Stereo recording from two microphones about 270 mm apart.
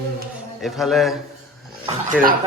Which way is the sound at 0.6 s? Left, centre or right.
Centre.